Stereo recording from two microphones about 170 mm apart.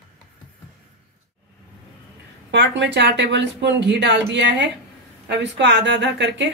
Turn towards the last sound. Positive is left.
turn(degrees=-90)